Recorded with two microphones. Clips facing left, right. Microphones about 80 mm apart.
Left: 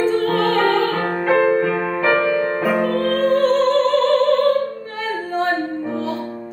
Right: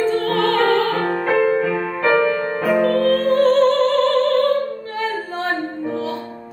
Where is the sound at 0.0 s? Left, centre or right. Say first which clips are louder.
Left 1 dB; centre.